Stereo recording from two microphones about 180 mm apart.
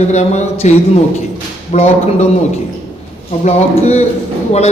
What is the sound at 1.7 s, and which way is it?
Speech, 40° left (ahead or behind).